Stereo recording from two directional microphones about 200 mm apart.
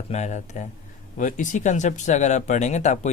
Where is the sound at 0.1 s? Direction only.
35° left (ahead or behind).